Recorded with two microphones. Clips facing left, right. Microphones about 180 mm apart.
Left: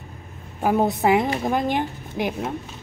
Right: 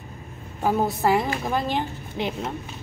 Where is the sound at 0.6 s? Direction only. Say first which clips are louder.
Left 3 dB; 15° left (ahead or behind).